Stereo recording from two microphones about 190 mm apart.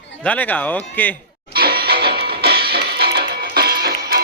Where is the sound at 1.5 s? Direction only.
55° right (ahead or behind).